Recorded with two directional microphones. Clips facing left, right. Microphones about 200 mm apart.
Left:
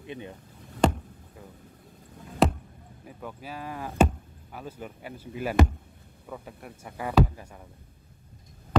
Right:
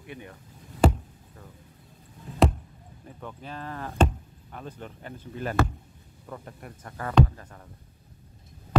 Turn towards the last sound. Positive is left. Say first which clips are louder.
# right 1 dB
turn(degrees=10)  # may be behind; listen again after turning